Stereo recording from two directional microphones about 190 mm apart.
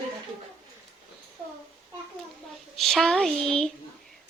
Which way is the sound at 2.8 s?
Centre (ahead or behind).